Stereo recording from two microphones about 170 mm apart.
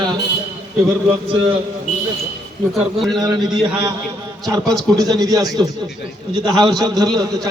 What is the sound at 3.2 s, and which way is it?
A man's voice, 25° right (ahead or behind).